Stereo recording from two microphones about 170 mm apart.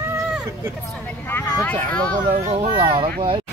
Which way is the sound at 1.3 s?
10° left (ahead or behind).